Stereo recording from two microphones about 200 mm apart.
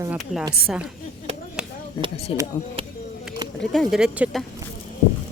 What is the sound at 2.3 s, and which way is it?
Speech, 30° left (ahead or behind).